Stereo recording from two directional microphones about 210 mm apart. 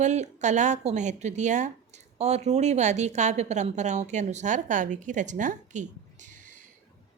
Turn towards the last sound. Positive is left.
turn(degrees=-35)  # may be behind; listen again after turning